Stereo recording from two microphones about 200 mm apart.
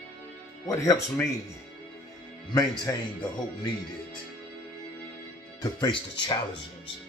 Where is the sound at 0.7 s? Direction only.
15° left (ahead or behind).